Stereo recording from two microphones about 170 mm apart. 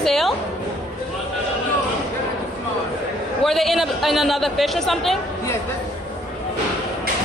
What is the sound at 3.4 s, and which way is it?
A man's voice, centre (ahead or behind).